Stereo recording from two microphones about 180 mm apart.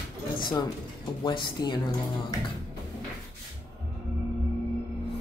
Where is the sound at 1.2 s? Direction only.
25° left (ahead or behind).